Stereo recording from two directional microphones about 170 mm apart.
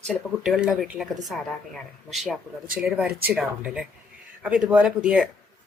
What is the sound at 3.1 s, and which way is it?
Speech, 65° right (ahead or behind).